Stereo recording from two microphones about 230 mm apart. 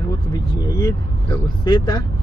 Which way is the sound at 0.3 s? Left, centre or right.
Centre.